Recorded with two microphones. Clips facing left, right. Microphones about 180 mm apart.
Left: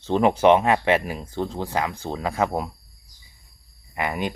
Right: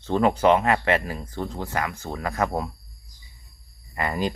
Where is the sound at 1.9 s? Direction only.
30° left (ahead or behind).